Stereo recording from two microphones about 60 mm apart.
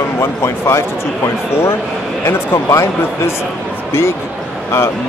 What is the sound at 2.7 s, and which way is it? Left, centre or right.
Speech, left.